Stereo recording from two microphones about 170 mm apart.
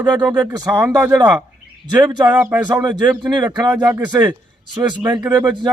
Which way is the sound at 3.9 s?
15° right (ahead or behind).